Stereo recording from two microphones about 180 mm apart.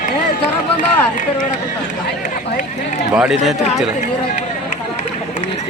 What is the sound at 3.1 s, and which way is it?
Speech, 5° right (ahead or behind).